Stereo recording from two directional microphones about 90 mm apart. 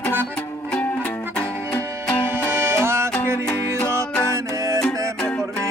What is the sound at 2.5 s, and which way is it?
Music, 30° right (ahead or behind).